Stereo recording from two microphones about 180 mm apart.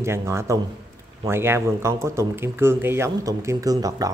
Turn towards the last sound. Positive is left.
turn(degrees=-20)  # may be behind; listen again after turning